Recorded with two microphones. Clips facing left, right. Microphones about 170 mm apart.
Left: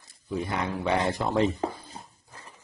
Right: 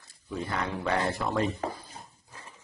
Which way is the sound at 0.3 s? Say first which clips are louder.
Left 3 dB; 15° left (ahead or behind).